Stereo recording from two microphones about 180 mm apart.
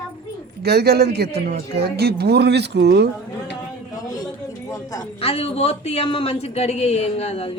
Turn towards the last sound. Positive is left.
turn(degrees=35)  # may be behind; listen again after turning